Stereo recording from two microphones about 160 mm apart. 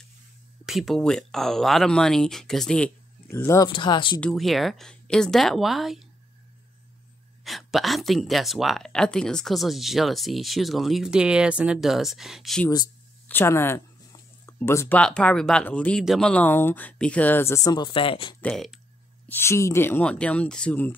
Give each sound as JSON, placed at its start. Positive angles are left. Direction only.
{"t": 0.7, "sound": "speech", "side_deg": 0}
{"t": 3.3, "sound": "speech", "side_deg": 15}
{"t": 3.6, "sound": "speech", "side_deg": 30}
{"t": 4.2, "sound": "speech", "side_deg": 0}
{"t": 7.4, "sound": "speech", "side_deg": 0}
{"t": 13.3, "sound": "speech", "side_deg": 15}
{"t": 14.4, "sound": "a sound", "side_deg": 15}
{"t": 15.0, "sound": "speech", "side_deg": 5}
{"t": 18.4, "sound": "speech", "side_deg": 0}
{"t": 19.2, "sound": "speech", "side_deg": 15}